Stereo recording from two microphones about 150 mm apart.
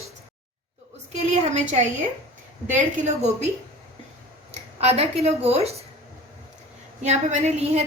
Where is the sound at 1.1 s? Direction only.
50° right (ahead or behind).